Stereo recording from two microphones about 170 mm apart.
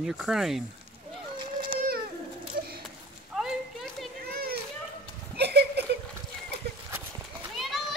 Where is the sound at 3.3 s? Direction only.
Centre (ahead or behind).